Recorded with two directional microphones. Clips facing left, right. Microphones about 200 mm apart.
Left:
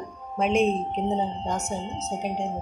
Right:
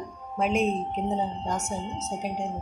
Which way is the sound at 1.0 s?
25° left (ahead or behind).